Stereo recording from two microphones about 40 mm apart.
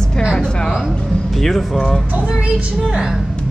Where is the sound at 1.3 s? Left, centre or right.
Centre.